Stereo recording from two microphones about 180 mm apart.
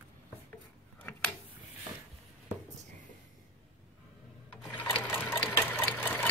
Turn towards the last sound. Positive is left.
turn(degrees=10)  # may be behind; listen again after turning